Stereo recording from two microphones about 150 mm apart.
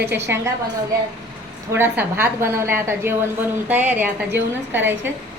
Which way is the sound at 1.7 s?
15° right (ahead or behind).